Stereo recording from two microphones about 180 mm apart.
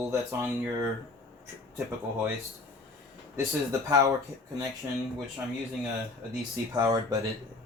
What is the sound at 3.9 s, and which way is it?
Speech, 20° right (ahead or behind).